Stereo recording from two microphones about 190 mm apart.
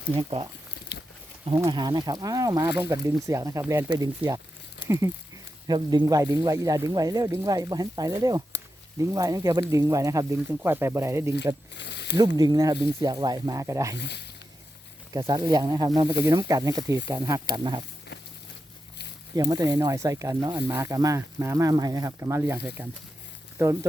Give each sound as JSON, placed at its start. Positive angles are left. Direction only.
{"t": 0.2, "sound": "speech", "side_deg": -30}
{"t": 0.9, "sound": "a sound", "side_deg": 60}
{"t": 1.5, "sound": "speech", "side_deg": -20}
{"t": 11.7, "sound": "a sound", "side_deg": 65}
{"t": 12.4, "sound": "speech", "side_deg": -20}
{"t": 14.0, "sound": "speech", "side_deg": 60}
{"t": 15.1, "sound": "speech", "side_deg": -20}
{"t": 19.4, "sound": "speech", "side_deg": -20}